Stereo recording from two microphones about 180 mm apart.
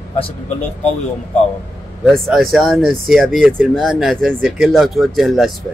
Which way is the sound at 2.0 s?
Centre (ahead or behind).